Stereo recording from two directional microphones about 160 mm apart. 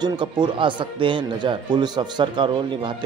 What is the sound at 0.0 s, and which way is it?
Speech, 30° right (ahead or behind).